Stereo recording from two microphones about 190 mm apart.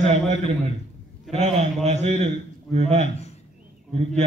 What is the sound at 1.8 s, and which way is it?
A man's voice, 35° right (ahead or behind).